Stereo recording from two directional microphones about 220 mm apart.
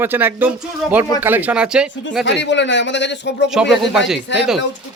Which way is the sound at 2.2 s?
55° left (ahead or behind).